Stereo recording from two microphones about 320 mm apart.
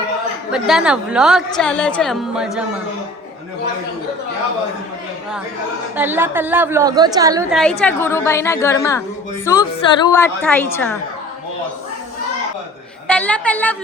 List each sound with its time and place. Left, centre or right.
0.5 s a woman's voice: centre
6.0 s a woman's voice: centre
7.5 s a woman's voice: centre
10.1 s a woman's voice: centre
13.1 s a woman's voice: centre